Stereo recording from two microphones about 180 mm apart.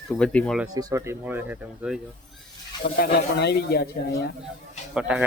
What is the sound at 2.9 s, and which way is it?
Speech, 60° left (ahead or behind).